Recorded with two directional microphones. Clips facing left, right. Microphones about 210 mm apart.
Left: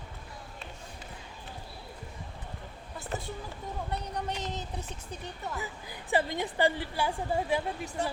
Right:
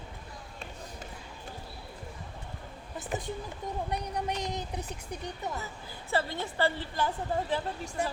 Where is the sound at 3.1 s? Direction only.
15° right (ahead or behind).